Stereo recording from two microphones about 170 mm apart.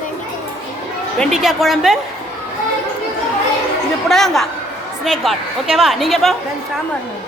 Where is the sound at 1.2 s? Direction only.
Centre (ahead or behind).